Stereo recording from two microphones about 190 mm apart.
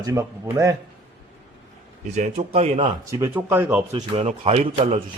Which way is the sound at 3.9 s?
30° right (ahead or behind).